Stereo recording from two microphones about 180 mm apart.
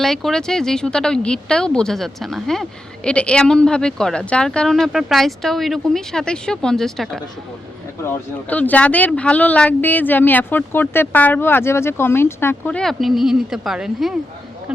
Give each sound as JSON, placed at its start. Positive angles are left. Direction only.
{"t": 0.0, "sound": "speech", "side_deg": 0}